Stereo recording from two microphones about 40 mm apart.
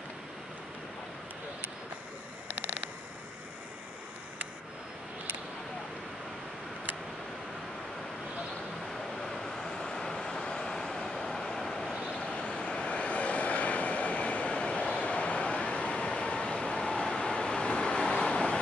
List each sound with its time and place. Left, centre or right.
2.4 s a sound: right
8.9 s vehicle: centre
12.1 s vehicle: left